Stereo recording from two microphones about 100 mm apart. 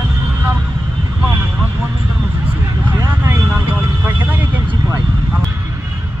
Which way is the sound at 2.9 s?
35° right (ahead or behind).